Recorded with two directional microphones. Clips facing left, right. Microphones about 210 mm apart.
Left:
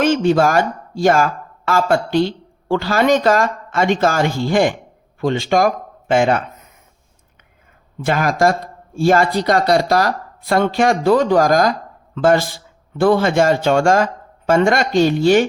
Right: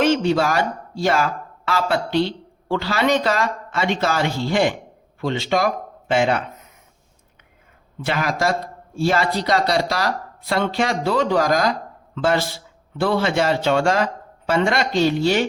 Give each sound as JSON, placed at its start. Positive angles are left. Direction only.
{"t": 0.0, "sound": "speech", "side_deg": 50}
{"t": 8.0, "sound": "speech", "side_deg": 50}